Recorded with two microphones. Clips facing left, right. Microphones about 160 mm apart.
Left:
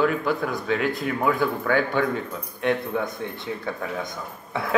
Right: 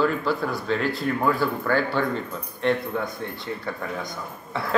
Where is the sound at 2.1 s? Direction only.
10° left (ahead or behind).